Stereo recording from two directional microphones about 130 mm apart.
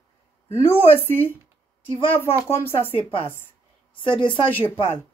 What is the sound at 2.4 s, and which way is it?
Speech, 20° left (ahead or behind).